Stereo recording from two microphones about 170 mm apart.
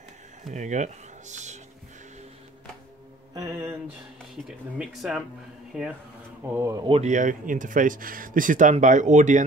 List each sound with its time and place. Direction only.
0.5 s speech: 45° right (ahead or behind)
4.5 s speech: centre (ahead or behind)
6.5 s speech: 20° right (ahead or behind)
6.9 s speech: 45° right (ahead or behind)